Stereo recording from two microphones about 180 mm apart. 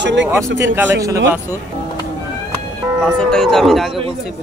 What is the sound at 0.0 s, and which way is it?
Speech, 80° right.